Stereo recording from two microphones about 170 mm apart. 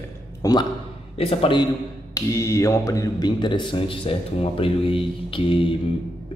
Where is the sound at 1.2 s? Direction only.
35° left (ahead or behind).